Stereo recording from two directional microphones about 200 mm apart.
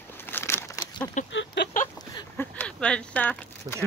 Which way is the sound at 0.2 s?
10° left (ahead or behind).